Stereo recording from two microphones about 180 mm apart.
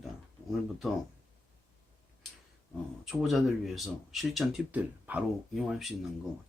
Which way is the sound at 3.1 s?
Centre (ahead or behind).